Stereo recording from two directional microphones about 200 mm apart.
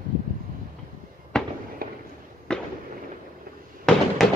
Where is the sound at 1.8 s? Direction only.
45° right (ahead or behind).